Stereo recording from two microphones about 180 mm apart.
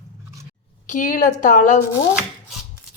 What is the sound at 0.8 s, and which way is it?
Speech, 45° left (ahead or behind).